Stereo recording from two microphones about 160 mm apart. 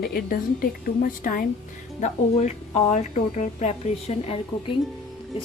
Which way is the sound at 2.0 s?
45° left (ahead or behind).